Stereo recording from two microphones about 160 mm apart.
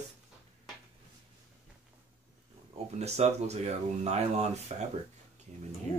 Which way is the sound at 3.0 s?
45° right (ahead or behind).